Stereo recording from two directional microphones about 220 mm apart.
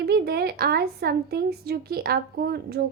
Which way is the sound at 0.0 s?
45° right (ahead or behind).